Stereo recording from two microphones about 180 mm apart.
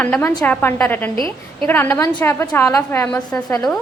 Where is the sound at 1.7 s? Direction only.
15° left (ahead or behind).